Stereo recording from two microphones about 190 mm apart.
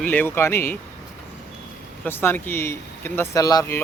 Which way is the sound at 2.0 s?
10° left (ahead or behind).